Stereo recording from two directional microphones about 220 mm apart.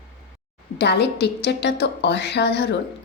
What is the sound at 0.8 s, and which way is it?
A woman's voice, 50° left (ahead or behind).